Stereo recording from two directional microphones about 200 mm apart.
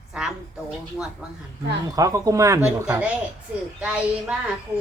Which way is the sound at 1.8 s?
15° right (ahead or behind).